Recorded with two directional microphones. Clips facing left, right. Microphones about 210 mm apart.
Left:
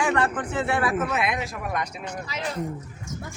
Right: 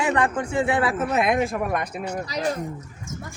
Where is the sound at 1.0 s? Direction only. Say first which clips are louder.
Right 5 dB; 40° right (ahead or behind).